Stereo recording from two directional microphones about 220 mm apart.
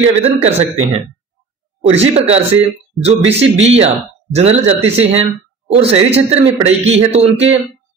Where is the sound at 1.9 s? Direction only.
30° right (ahead or behind).